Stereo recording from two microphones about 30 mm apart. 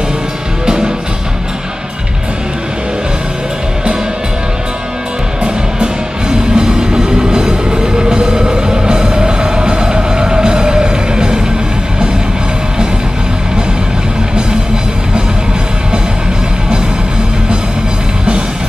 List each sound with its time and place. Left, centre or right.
6.5 s music: right